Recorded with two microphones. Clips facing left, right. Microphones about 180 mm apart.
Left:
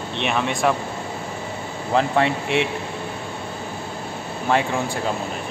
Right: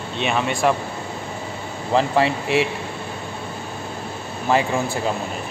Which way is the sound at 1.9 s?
Centre (ahead or behind).